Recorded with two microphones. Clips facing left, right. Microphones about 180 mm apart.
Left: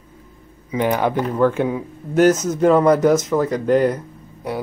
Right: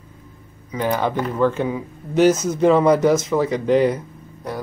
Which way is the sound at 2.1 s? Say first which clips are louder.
Left 1 dB; 45° left (ahead or behind).